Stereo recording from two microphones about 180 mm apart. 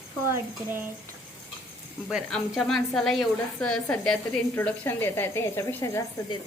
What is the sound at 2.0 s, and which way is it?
A woman's voice, centre (ahead or behind).